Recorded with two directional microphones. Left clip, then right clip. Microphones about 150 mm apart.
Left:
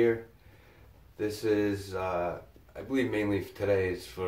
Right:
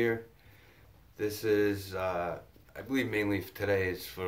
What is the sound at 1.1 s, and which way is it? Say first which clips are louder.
Speech: even; 15° right (ahead or behind).